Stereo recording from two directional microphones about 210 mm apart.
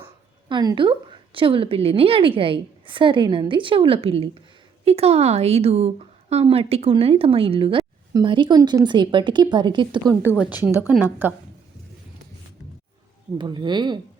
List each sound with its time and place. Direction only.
0.0 s a woman's voice: 20° right (ahead or behind)
10.6 s a woman's voice: 10° right (ahead or behind)
13.4 s speech: 20° right (ahead or behind)